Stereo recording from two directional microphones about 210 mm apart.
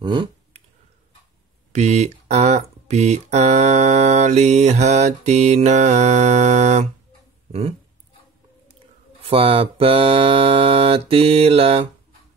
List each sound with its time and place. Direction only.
0.0 s a sound: 25° right (ahead or behind)
1.7 s speech: 30° right (ahead or behind)
9.2 s mantra: 25° right (ahead or behind)